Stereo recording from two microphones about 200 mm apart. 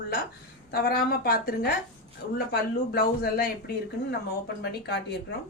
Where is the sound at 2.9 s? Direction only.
50° left (ahead or behind).